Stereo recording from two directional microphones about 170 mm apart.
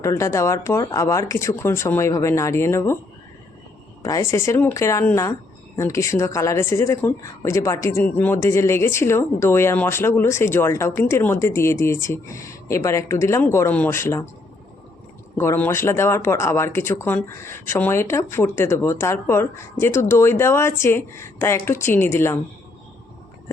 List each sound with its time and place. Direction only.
0.0 s a woman's voice: 20° left (ahead or behind)
4.0 s a woman's voice: 20° left (ahead or behind)
15.4 s a woman's voice: 10° left (ahead or behind)